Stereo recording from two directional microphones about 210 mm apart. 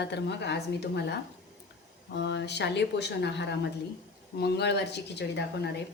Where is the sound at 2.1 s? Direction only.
55° left (ahead or behind).